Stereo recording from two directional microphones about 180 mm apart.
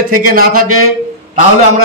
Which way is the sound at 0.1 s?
50° right (ahead or behind).